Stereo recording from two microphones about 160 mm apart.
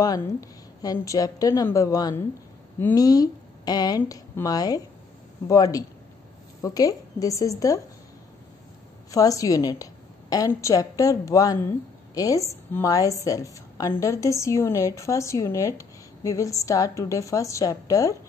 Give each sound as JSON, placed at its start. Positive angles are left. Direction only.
{"t": 0.0, "sound": "a woman's voice", "side_deg": 20}
{"t": 9.1, "sound": "a woman's voice", "side_deg": 20}